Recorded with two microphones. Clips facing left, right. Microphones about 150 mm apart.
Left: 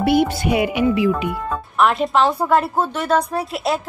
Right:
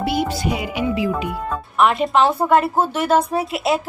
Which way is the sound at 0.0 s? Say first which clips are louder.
Left 4 dB; 60° left (ahead or behind).